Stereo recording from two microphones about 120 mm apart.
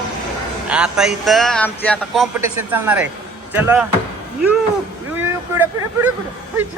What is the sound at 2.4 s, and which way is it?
Speech, 15° right (ahead or behind).